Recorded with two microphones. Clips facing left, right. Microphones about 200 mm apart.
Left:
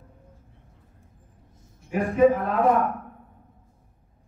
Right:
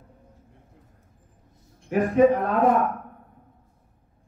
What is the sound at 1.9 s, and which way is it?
Speech, 55° right (ahead or behind).